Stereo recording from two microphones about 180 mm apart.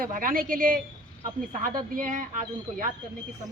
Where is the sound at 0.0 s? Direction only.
50° right (ahead or behind).